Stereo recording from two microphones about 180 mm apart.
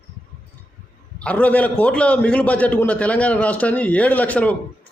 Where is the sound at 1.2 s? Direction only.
10° left (ahead or behind).